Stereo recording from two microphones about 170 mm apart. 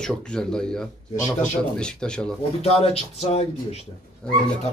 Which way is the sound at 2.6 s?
35° left (ahead or behind).